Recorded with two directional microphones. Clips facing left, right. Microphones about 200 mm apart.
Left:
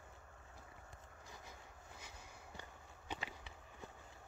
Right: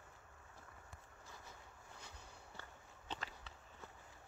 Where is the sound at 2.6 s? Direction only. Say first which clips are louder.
Left 1 dB; 15° left (ahead or behind).